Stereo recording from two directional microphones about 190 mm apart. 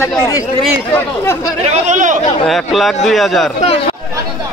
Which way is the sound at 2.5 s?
Centre (ahead or behind).